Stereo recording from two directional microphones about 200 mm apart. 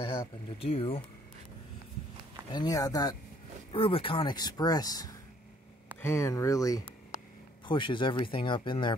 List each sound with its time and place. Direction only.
0.6 s speech: 30° left (ahead or behind)
2.5 s speech: 20° left (ahead or behind)